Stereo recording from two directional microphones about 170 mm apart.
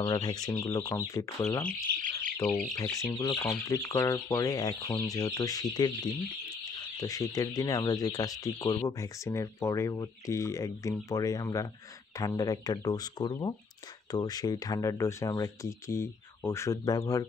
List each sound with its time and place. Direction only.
0.0 s speech: 25° left (ahead or behind)
1.6 s bird: 5° left (ahead or behind)
2.7 s speech: 20° left (ahead or behind)